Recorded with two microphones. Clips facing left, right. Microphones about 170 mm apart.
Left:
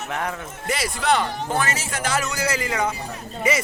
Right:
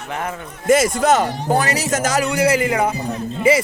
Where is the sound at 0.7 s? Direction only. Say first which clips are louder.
Right 8 dB; 45° right (ahead or behind).